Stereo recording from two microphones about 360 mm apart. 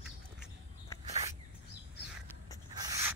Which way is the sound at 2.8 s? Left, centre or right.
Centre.